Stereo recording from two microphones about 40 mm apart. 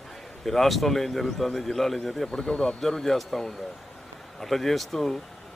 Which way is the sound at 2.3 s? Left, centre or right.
Left.